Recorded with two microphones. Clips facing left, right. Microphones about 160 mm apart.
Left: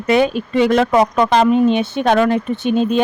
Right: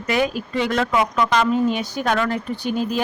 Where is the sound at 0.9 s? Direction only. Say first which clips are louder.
Left 6 dB; 35° left (ahead or behind).